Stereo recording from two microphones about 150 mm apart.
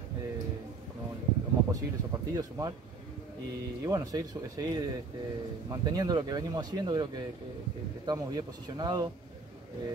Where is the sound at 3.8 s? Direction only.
20° right (ahead or behind).